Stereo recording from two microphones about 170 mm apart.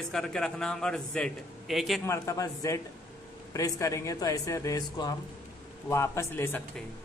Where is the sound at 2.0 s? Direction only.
20° left (ahead or behind).